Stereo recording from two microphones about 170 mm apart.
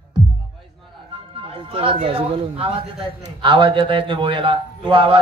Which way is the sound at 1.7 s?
30° right (ahead or behind).